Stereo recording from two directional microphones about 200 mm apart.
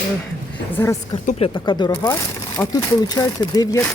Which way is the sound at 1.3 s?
30° left (ahead or behind).